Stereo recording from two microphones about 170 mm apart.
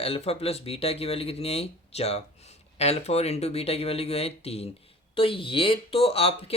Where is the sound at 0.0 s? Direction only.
35° left (ahead or behind).